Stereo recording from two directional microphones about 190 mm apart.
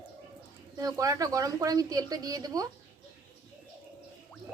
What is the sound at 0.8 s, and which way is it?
A woman's voice, 20° right (ahead or behind).